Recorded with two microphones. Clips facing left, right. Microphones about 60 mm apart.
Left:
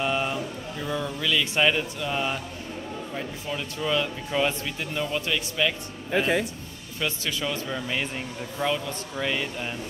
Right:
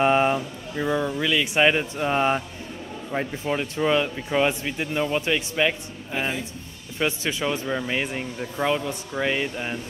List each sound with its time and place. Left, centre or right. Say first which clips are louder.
0.0 s a sound: right 7 dB; right
0.8 s speech: right 4 dB; centre
2.0 s speech: right 6 dB; right
6.1 s speech: left 4 dB; left
7.0 s speech: right 4 dB; right